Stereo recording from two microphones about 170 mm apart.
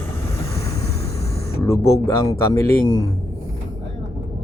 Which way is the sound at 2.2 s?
20° left (ahead or behind).